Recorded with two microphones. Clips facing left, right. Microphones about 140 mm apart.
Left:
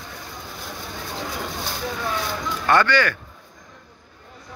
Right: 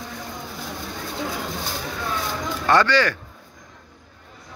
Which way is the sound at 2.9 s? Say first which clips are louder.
Right 1 dB; 30° right (ahead or behind).